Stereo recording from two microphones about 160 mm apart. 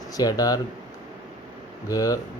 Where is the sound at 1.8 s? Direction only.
20° left (ahead or behind).